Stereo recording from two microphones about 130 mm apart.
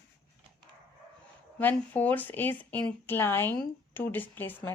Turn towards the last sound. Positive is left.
turn(degrees=15)  # may be behind; listen again after turning